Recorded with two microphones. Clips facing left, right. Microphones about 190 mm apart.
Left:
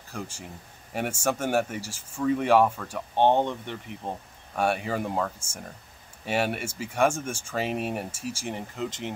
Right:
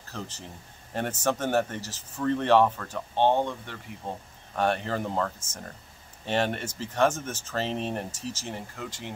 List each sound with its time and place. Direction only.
0.1 s speech: 10° left (ahead or behind)
4.6 s speech: 10° left (ahead or behind)